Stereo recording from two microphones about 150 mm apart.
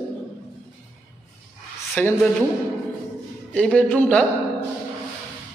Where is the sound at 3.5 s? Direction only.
5° left (ahead or behind).